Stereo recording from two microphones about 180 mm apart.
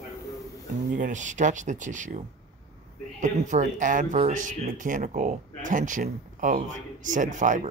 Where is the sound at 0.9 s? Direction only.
45° right (ahead or behind).